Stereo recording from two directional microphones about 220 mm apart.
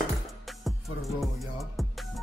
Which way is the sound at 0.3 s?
Centre (ahead or behind).